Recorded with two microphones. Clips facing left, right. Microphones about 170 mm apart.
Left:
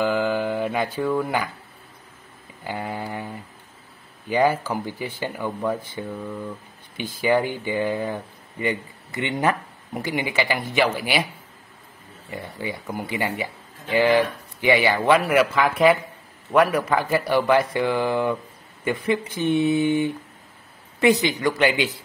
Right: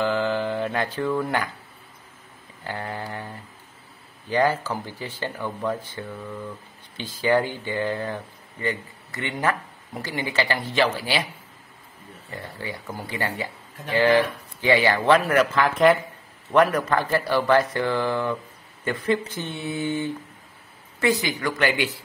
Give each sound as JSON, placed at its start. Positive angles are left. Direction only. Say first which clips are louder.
{"t": 0.0, "sound": "mantra", "louder": "left 1 dB", "side_deg": 10}
{"t": 0.9, "sound": "speech", "louder": "left 1 dB", "side_deg": 5}
{"t": 2.6, "sound": "speech", "louder": "left 2 dB", "side_deg": 10}
{"t": 12.3, "sound": "speech", "louder": "left 3 dB", "side_deg": 15}